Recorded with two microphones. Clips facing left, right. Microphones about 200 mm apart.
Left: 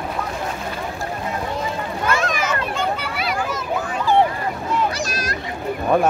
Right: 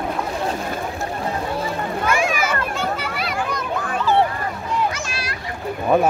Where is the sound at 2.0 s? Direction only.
10° right (ahead or behind).